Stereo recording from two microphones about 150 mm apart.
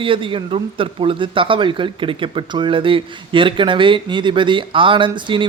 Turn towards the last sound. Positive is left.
turn(degrees=-35)  # may be behind; listen again after turning